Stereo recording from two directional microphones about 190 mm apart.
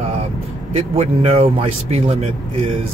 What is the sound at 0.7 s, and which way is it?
A man's voice, 30° right (ahead or behind).